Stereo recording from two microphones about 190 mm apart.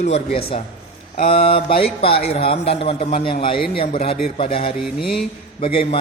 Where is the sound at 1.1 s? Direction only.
40° left (ahead or behind).